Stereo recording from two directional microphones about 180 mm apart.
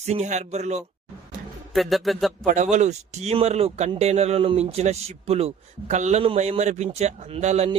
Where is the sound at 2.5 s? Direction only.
40° right (ahead or behind).